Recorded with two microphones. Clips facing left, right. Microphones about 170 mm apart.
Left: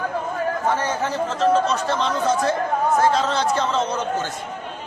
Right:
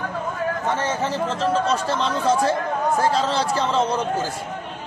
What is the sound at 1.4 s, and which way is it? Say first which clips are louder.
Speech: left 4 dB; 30° right (ahead or behind).